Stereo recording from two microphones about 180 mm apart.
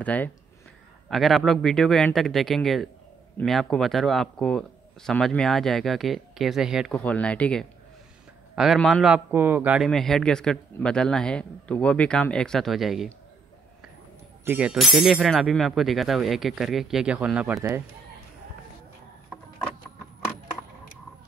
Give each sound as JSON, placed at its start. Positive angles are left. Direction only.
{"t": 0.0, "sound": "a man's voice", "side_deg": 10}
{"t": 6.9, "sound": "a man's voice", "side_deg": 5}
{"t": 14.4, "sound": "a man's voice", "side_deg": -10}